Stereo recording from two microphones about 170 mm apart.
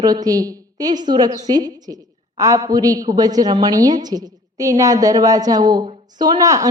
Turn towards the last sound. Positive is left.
turn(degrees=-20)  # may be behind; listen again after turning